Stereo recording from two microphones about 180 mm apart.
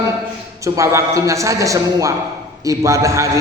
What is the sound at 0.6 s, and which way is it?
A man's voice, 15° right (ahead or behind).